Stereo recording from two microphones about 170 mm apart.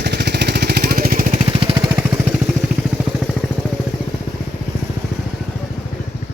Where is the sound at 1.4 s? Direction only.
30° right (ahead or behind).